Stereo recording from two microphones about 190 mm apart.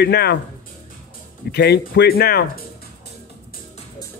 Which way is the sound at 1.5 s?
60° left (ahead or behind).